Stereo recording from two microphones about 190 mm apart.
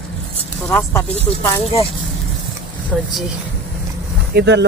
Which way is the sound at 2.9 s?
5° right (ahead or behind).